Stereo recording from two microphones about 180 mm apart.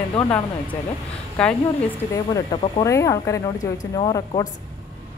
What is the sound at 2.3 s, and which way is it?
A woman's voice, 20° left (ahead or behind).